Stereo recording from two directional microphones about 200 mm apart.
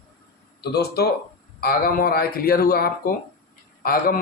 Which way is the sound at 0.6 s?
55° left (ahead or behind).